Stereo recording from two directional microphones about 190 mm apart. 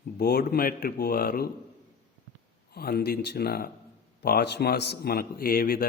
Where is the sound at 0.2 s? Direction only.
55° left (ahead or behind).